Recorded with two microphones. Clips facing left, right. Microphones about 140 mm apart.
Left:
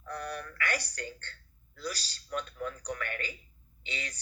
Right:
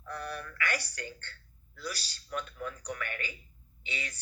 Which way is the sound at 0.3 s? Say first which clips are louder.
Even; 35° left (ahead or behind).